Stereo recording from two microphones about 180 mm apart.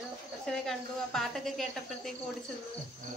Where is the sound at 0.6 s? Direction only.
Centre (ahead or behind).